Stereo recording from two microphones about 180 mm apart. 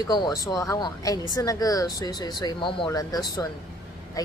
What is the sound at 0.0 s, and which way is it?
Speech, 25° left (ahead or behind).